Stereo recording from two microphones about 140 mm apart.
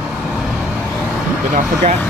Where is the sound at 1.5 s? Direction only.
75° right (ahead or behind).